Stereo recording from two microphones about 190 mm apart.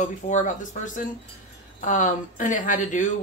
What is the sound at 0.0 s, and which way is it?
Speech, 40° left (ahead or behind).